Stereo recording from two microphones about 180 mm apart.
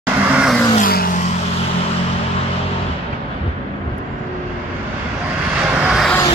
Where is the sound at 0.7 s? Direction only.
55° left (ahead or behind).